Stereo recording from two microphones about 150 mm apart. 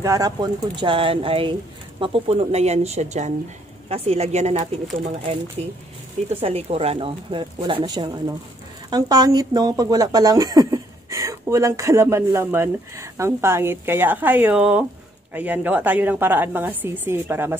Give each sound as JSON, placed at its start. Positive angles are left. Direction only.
{"t": 0.0, "sound": "a woman's voice", "side_deg": -25}